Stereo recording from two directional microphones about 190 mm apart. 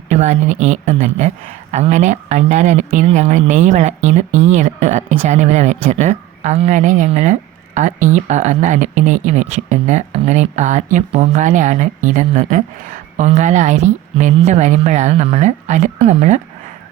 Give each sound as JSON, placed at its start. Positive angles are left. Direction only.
{"t": 0.1, "sound": "a woman's voice", "side_deg": -35}